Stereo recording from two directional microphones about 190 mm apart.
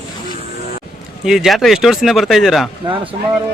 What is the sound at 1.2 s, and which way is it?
Speech, 5° right (ahead or behind).